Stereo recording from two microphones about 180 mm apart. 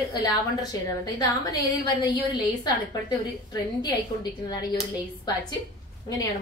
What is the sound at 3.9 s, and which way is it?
Speech, 25° left (ahead or behind).